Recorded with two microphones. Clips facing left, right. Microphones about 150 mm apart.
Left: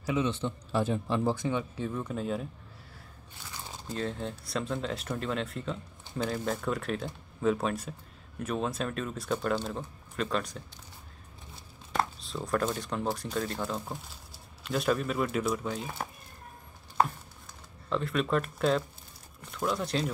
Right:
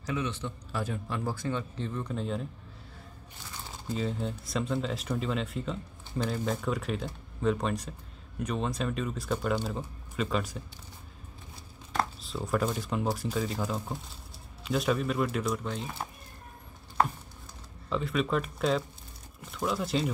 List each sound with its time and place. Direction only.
0.2 s a man's voice: 25° left (ahead or behind); by 2.4 s 5° left (ahead or behind)
3.9 s speech: centre (ahead or behind)
11.9 s speech: centre (ahead or behind)
17.8 s speech: centre (ahead or behind)